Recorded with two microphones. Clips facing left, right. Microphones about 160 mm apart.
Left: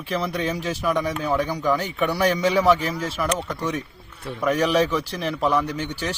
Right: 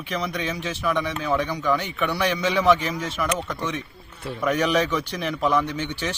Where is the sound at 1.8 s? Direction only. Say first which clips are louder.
Left 3 dB; 35° left (ahead or behind).